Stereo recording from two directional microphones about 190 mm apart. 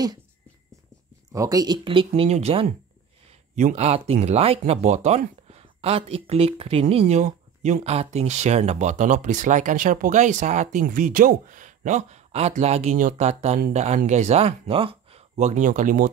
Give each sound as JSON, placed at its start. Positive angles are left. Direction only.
{"t": 1.3, "sound": "speech", "side_deg": -15}